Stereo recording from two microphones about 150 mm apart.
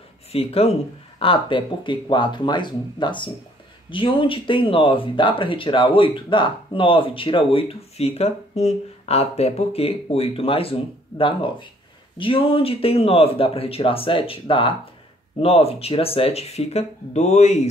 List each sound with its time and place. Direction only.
0.3 s speech: 40° left (ahead or behind)